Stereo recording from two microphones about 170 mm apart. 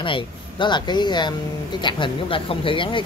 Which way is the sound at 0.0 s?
30° left (ahead or behind).